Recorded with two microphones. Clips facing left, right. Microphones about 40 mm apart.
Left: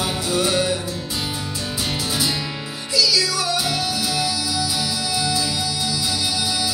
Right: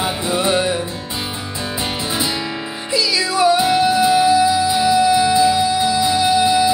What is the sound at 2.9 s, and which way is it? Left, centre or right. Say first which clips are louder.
Music: right 3 dB; right.